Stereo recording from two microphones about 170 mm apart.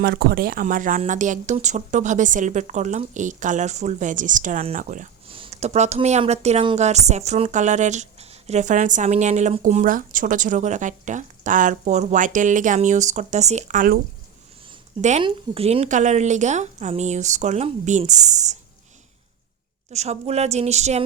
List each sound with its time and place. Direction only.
0.0 s speech: 70° right (ahead or behind); by 5.0 s 50° right (ahead or behind)
5.3 s speech: 35° right (ahead or behind); by 14.0 s 55° right (ahead or behind)
15.2 s speech: 35° right (ahead or behind)
19.9 s a woman's voice: 40° right (ahead or behind)